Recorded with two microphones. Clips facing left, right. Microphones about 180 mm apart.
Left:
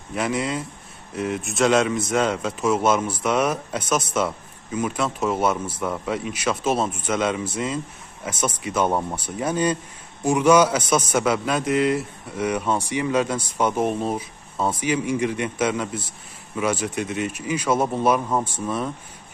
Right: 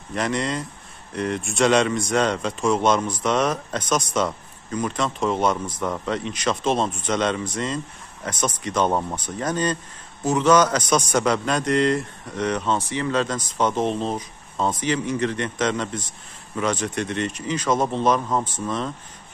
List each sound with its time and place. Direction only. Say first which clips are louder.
0.1 s speech: even; 5° left (ahead or behind)